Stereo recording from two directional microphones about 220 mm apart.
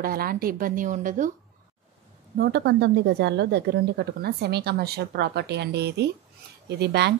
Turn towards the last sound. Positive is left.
turn(degrees=-50)  # may be behind; listen again after turning